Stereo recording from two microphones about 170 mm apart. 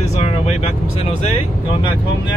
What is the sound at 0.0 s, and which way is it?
Vehicle, 40° left (ahead or behind).